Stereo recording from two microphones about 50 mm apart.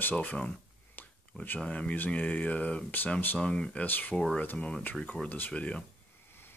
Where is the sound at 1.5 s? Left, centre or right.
Left.